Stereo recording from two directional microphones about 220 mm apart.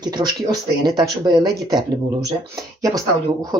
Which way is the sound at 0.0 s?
20° right (ahead or behind).